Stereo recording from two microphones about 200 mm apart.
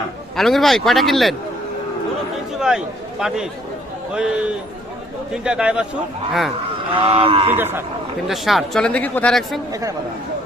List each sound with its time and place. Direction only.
0.3 s speech: centre (ahead or behind)
2.6 s speech: 5° right (ahead or behind)
6.9 s speech: 30° right (ahead or behind)
7.5 s a man's voice: 10° right (ahead or behind)
8.3 s speech: centre (ahead or behind)